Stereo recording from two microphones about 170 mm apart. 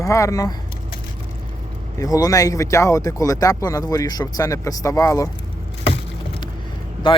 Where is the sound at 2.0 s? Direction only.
20° left (ahead or behind).